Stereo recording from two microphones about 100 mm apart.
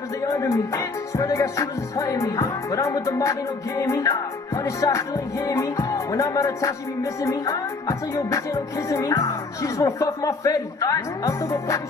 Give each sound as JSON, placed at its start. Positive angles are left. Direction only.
{"t": 0.3, "sound": "music", "side_deg": 35}